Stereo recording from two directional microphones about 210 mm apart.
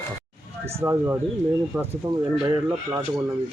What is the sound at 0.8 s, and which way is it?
Speech, 10° right (ahead or behind).